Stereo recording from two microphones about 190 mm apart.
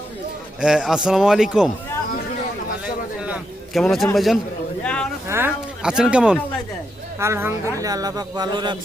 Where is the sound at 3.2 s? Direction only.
5° right (ahead or behind).